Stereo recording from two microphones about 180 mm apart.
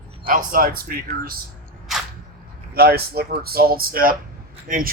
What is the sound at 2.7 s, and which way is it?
Speech, 60° right (ahead or behind).